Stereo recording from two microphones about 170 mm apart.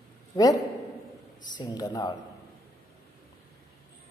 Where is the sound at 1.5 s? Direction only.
25° left (ahead or behind).